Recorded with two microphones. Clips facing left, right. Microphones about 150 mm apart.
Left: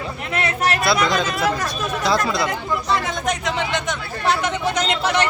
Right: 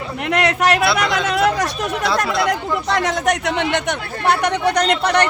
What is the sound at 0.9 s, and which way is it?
Speech, 65° right (ahead or behind).